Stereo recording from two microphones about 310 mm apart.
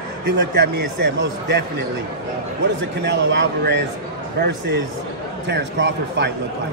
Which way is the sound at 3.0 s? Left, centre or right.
Right.